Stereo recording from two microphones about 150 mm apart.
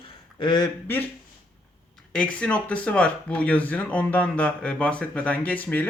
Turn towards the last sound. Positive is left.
turn(degrees=10)  # may be behind; listen again after turning